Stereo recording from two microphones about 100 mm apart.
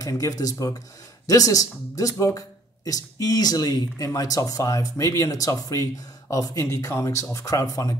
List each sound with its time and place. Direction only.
0.0 s speech: 35° left (ahead or behind)